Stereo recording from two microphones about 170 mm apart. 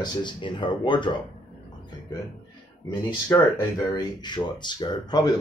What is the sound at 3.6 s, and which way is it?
Speech, 20° left (ahead or behind).